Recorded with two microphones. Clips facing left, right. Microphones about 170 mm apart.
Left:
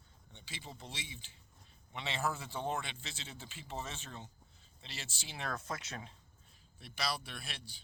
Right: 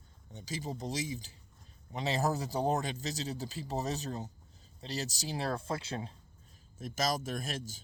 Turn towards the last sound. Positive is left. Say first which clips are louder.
# right 11 dB
turn(degrees=-45)  # may be behind; listen again after turning